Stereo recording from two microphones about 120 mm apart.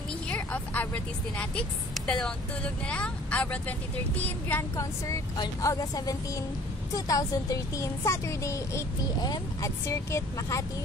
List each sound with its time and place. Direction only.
0.3 s speech: 15° left (ahead or behind)
4.7 s speech: 30° left (ahead or behind)